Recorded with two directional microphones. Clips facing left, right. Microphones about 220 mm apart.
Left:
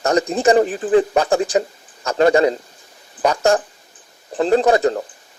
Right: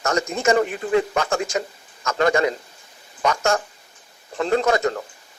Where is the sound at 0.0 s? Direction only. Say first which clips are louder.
Left 5 dB; 35° left (ahead or behind).